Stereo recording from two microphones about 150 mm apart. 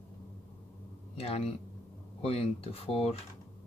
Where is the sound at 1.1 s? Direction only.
40° left (ahead or behind).